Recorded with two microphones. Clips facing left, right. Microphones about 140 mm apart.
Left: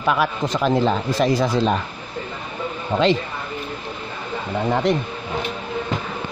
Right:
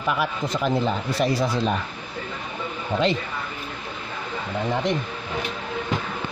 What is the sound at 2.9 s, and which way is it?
Speech, 45° left (ahead or behind).